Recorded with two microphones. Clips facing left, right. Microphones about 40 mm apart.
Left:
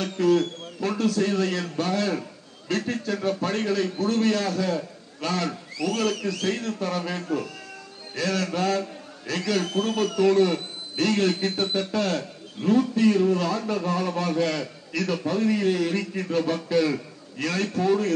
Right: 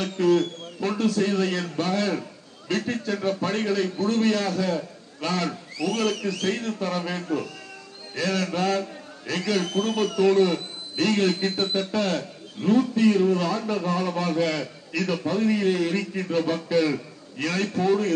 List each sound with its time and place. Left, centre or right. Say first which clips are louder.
0.0 s a man's voice: even; right